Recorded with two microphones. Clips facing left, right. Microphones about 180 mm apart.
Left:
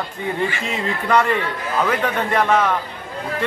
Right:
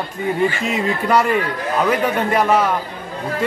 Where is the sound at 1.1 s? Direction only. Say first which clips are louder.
Even; 10° right (ahead or behind).